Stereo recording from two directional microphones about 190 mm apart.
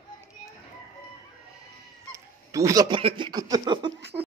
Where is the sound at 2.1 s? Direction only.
15° right (ahead or behind).